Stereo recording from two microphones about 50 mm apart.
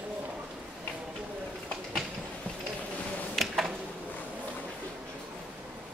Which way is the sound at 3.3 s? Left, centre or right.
Centre.